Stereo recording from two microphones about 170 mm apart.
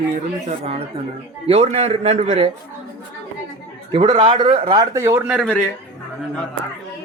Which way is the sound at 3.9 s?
30° right (ahead or behind).